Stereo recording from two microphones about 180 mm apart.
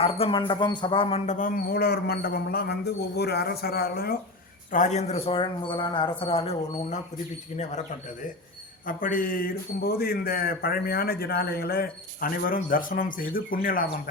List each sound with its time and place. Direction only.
0.0 s speech: 30° left (ahead or behind)
1.3 s a man's voice: 45° left (ahead or behind)
4.7 s speech: 40° left (ahead or behind)
8.9 s a man's voice: 50° left (ahead or behind)